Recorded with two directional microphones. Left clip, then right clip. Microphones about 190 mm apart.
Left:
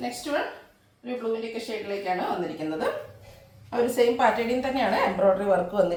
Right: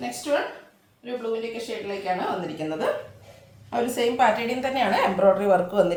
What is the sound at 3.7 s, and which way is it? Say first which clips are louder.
A woman's voice: left 2 dB; 20° right (ahead or behind).